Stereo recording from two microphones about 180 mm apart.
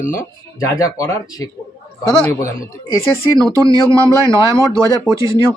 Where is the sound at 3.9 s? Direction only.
15° right (ahead or behind).